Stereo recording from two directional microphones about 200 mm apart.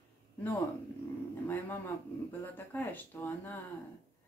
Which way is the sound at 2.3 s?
10° left (ahead or behind).